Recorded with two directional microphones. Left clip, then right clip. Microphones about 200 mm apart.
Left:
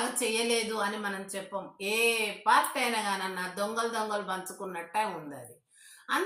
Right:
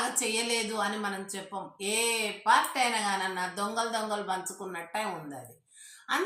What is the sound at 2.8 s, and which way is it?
A woman's voice, 10° right (ahead or behind).